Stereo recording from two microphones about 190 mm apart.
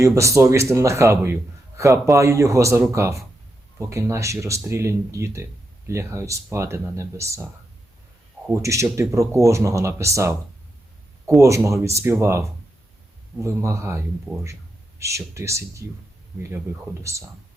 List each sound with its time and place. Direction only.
0.0 s a man's voice: 15° right (ahead or behind)
8.4 s a man's voice: 15° right (ahead or behind)
11.3 s a man's voice: 15° right (ahead or behind)
17.0 s a man's voice: 15° right (ahead or behind)